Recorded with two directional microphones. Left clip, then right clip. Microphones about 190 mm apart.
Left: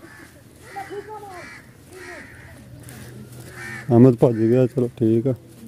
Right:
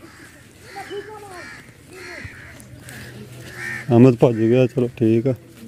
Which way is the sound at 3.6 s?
40° right (ahead or behind).